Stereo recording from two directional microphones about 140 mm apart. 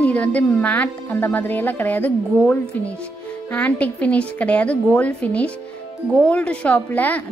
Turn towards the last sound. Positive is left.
turn(degrees=10)  # may be behind; listen again after turning